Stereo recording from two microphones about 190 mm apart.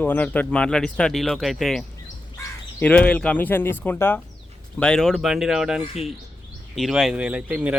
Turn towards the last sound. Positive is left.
turn(degrees=-5)  # may be behind; listen again after turning